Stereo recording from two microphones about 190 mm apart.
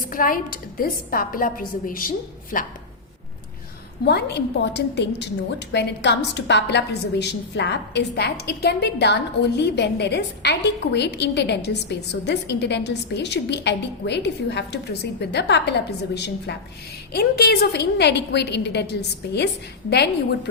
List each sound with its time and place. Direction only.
0.0 s a woman's voice: 45° left (ahead or behind)
4.0 s a woman's voice: 60° left (ahead or behind)